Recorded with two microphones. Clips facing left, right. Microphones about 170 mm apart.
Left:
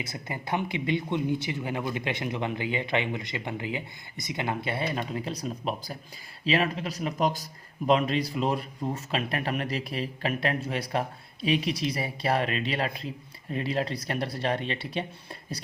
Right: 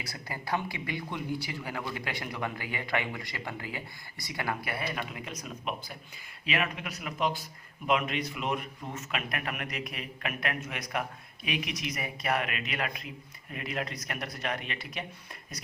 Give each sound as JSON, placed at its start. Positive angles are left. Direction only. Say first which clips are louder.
{"t": 0.0, "sound": "speech", "louder": "left 4 dB", "side_deg": 20}